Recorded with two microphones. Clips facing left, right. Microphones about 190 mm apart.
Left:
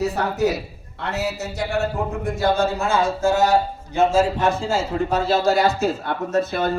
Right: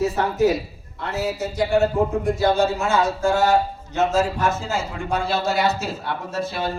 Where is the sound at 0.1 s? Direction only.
70° left (ahead or behind).